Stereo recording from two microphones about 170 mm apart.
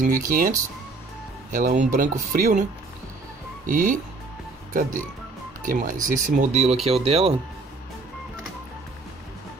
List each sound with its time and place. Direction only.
0.0 s speech: 55° right (ahead or behind)
3.6 s speech: 50° right (ahead or behind)
5.6 s speech: 50° right (ahead or behind); by 7.3 s 35° right (ahead or behind)